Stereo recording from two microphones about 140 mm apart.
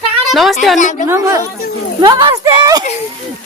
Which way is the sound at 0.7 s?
60° left (ahead or behind).